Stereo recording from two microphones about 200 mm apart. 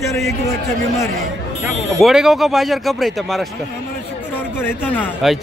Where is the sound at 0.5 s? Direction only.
15° left (ahead or behind).